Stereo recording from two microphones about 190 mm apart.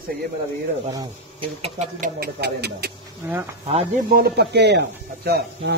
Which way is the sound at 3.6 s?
35° right (ahead or behind).